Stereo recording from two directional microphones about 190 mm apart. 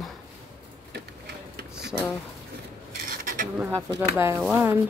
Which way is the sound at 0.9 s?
60° right (ahead or behind).